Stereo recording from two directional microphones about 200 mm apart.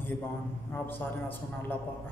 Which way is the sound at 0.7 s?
10° left (ahead or behind).